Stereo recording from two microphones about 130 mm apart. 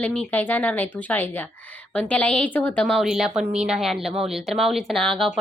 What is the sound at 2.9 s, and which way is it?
A woman's voice, centre (ahead or behind).